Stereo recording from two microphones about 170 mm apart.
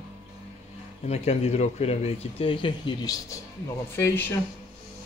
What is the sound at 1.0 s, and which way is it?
Speech, 40° left (ahead or behind).